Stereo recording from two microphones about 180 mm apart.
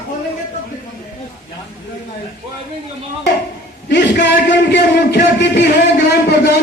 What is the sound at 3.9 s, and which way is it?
A man's voice, 75° left (ahead or behind).